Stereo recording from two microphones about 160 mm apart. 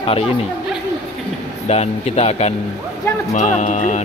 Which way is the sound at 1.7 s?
40° left (ahead or behind).